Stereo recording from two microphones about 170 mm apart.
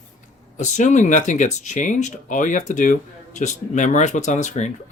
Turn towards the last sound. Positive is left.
turn(degrees=45)  # may be behind; listen again after turning